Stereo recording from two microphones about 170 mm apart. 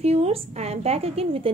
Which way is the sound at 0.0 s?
35° right (ahead or behind).